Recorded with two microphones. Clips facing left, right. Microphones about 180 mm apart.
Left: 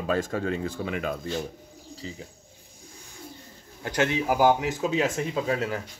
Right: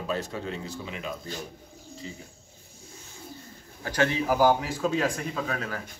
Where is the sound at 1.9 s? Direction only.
35° left (ahead or behind).